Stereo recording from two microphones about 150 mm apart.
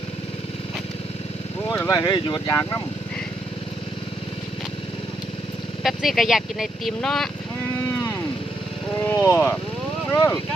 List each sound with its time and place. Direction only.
1.7 s speech: 25° left (ahead or behind)
5.8 s speech: centre (ahead or behind)
9.0 s speech: 20° left (ahead or behind)